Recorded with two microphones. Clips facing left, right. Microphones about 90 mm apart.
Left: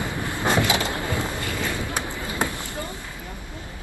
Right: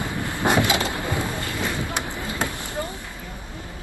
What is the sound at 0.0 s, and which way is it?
Vehicle, 20° left (ahead or behind).